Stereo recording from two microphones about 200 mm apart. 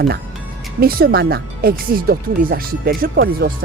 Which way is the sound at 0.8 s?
50° right (ahead or behind).